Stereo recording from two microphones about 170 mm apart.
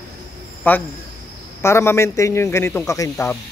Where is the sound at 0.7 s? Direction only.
10° left (ahead or behind).